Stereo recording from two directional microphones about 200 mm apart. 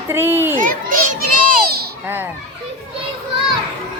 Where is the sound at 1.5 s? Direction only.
50° right (ahead or behind).